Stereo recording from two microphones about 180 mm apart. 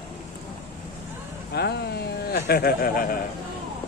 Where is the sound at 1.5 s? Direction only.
65° left (ahead or behind).